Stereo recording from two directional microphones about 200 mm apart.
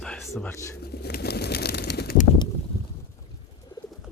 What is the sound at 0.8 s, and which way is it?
Bird, 55° left (ahead or behind).